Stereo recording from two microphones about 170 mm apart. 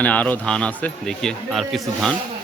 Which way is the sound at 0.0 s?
10° left (ahead or behind).